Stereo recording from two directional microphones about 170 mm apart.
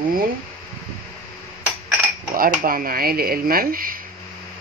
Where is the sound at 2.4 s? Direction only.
55° right (ahead or behind).